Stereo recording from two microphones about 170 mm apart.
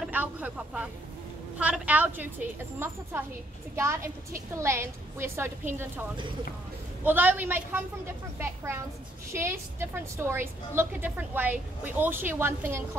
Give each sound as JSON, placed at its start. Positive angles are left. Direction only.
{"t": 0.0, "sound": "a woman's voice", "side_deg": -10}
{"t": 7.1, "sound": "a woman's voice", "side_deg": -10}